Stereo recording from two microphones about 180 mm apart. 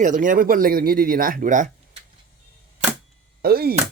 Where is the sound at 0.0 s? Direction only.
45° right (ahead or behind).